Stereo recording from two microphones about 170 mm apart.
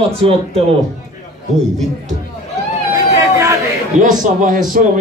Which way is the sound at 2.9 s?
20° right (ahead or behind).